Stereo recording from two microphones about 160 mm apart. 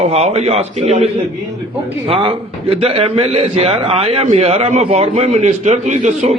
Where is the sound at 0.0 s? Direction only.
45° right (ahead or behind).